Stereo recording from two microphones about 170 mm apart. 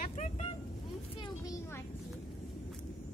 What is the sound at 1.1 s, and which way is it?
Vehicle, 25° left (ahead or behind).